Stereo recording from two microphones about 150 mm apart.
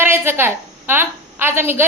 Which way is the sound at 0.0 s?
15° right (ahead or behind).